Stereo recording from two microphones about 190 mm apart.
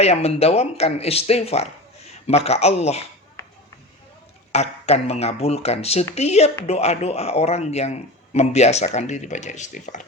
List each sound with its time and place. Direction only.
0.0 s speech: 35° left (ahead or behind)
4.5 s speech: 35° left (ahead or behind)